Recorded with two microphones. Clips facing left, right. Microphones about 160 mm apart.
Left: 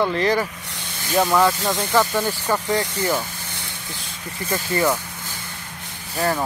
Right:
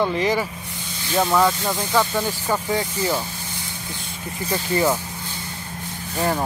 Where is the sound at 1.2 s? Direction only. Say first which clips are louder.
Even; centre (ahead or behind).